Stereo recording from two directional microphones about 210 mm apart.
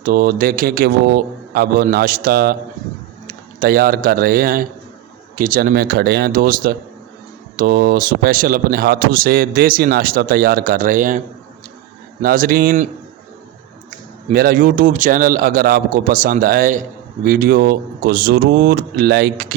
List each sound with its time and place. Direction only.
0.0 s a man's voice: 45° right (ahead or behind)
12.2 s speech: 40° right (ahead or behind)
14.3 s a man's voice: 40° right (ahead or behind)